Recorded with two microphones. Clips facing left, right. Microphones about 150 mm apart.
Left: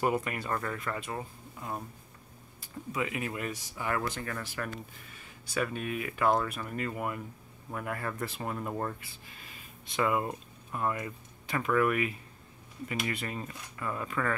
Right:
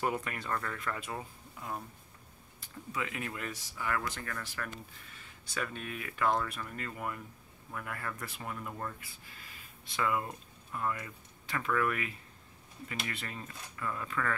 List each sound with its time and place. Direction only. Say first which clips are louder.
0.0 s speech: left 4 dB; 5° left (ahead or behind)
2.9 s speech: left 4 dB; 15° left (ahead or behind); by 8.9 s 40° left (ahead or behind)
9.0 s speech: left 3 dB; 20° left (ahead or behind)